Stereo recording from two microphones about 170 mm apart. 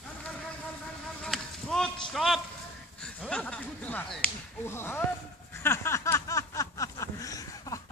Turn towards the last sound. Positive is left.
turn(degrees=20)  # may be behind; listen again after turning